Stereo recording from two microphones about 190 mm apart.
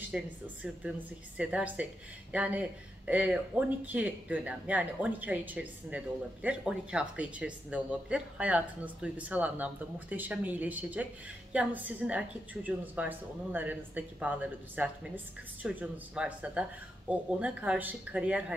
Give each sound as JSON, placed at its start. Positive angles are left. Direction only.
{"t": 0.0, "sound": "speech", "side_deg": -5}